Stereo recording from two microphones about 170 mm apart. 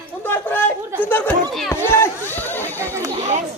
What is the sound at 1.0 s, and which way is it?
Chatter, 10° left (ahead or behind).